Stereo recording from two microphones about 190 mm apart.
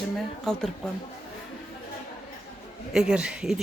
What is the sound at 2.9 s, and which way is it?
Speech, 5° right (ahead or behind).